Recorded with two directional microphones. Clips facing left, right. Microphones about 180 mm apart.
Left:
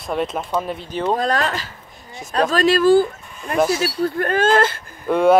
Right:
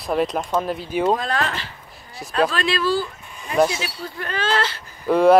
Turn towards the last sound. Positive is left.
turn(degrees=0)  # may be behind; listen again after turning